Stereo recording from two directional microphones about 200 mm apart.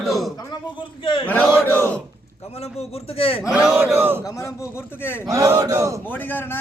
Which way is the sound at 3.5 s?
5° right (ahead or behind).